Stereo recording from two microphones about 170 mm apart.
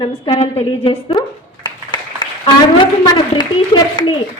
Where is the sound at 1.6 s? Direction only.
25° left (ahead or behind).